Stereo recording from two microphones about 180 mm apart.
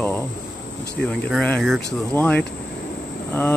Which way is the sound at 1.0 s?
5° left (ahead or behind).